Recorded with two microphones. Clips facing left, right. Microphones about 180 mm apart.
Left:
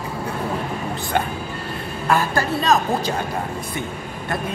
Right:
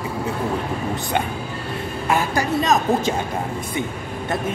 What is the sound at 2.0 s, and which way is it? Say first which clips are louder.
Speech: left 1 dB; 20° right (ahead or behind).